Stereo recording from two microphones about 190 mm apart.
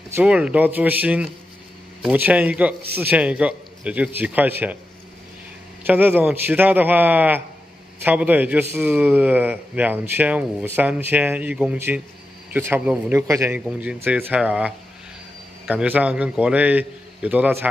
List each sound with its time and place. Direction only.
0.1 s speech: 5° right (ahead or behind)
5.9 s speech: 10° right (ahead or behind)